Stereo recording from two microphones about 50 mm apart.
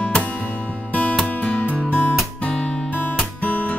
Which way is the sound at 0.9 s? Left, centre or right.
Left.